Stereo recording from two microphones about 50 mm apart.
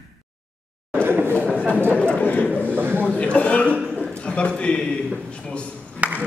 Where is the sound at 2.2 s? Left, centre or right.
Left.